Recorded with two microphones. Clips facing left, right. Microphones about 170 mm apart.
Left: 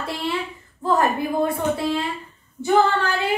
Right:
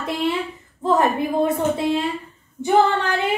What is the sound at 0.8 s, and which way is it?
A woman's voice, 20° right (ahead or behind).